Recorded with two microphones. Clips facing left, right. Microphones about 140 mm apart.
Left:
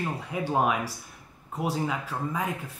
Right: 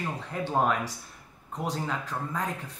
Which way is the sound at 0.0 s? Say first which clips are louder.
Left 2 dB; 10° left (ahead or behind).